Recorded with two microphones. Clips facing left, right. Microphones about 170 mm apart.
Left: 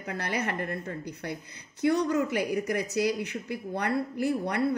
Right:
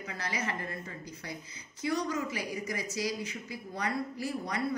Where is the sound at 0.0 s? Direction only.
60° left (ahead or behind).